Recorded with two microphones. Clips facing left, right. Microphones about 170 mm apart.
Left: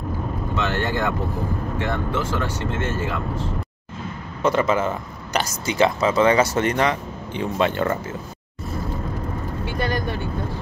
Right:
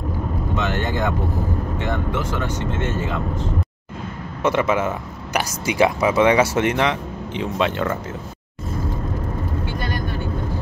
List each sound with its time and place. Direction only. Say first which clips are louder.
0.6 s speech: even; 15° right (ahead or behind)
4.4 s speech: even; 5° right (ahead or behind)